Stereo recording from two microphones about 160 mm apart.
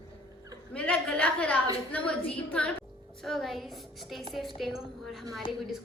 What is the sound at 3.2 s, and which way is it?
A woman's voice, centre (ahead or behind).